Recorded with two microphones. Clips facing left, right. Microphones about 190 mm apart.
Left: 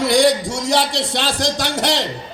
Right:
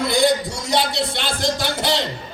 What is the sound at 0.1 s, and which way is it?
A man's voice, 80° left.